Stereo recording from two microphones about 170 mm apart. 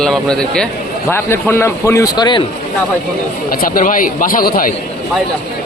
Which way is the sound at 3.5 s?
55° left (ahead or behind).